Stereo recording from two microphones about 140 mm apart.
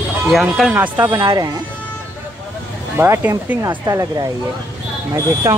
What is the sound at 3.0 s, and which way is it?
Speech, 15° right (ahead or behind).